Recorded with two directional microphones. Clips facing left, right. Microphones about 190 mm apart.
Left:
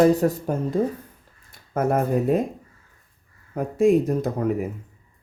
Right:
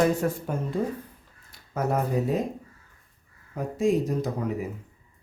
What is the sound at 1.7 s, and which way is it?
Speech, 55° left (ahead or behind).